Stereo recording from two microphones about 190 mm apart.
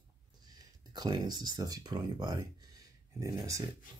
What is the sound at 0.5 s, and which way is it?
Speech, 20° right (ahead or behind).